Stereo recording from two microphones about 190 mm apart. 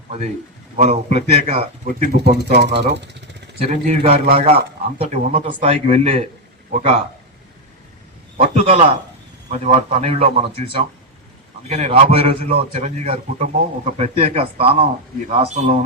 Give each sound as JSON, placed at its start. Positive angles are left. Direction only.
{"t": 0.8, "sound": "a man's voice", "side_deg": -35}
{"t": 2.1, "sound": "speech", "side_deg": -60}
{"t": 3.6, "sound": "a man's voice", "side_deg": -35}
{"t": 8.4, "sound": "a man's voice", "side_deg": -35}